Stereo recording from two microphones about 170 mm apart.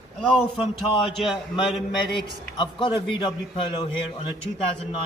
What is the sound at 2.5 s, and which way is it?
Speech, 30° left (ahead or behind).